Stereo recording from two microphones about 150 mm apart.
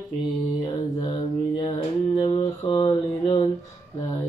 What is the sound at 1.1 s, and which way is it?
Mantra, 35° left (ahead or behind).